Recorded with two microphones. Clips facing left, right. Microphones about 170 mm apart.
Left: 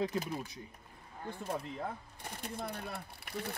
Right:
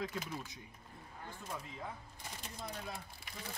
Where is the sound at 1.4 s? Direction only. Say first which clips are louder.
Left 7 dB; 60° left (ahead or behind).